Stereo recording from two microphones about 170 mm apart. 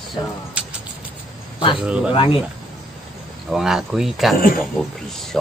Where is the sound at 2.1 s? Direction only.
30° left (ahead or behind).